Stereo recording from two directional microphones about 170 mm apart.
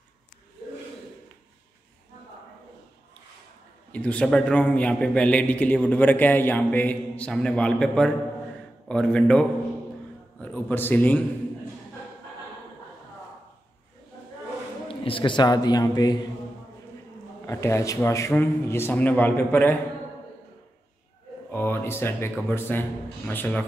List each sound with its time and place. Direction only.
3.9 s a man's voice: 10° left (ahead or behind)
14.9 s a man's voice: 30° left (ahead or behind)
17.5 s a man's voice: 15° left (ahead or behind)
21.5 s a man's voice: 10° left (ahead or behind)